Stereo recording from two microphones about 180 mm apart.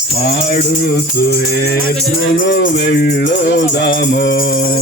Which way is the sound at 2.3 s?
85° left.